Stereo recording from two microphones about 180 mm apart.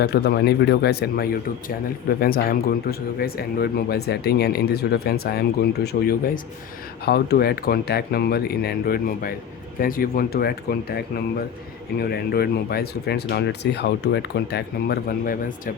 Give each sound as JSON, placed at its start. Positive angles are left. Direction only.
{"t": 0.0, "sound": "speech", "side_deg": 65}